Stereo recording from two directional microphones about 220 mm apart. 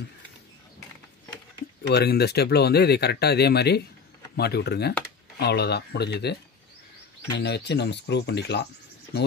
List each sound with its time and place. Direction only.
1.8 s speech: 50° left (ahead or behind)
7.3 s speech: 50° left (ahead or behind)